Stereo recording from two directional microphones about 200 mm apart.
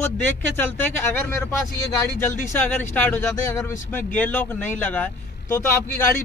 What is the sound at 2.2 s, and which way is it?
Speech, 10° left (ahead or behind).